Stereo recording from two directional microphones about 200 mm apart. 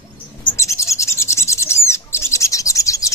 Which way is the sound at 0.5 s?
15° left (ahead or behind).